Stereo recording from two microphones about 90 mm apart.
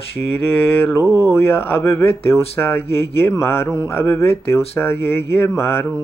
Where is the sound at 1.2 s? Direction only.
25° left (ahead or behind).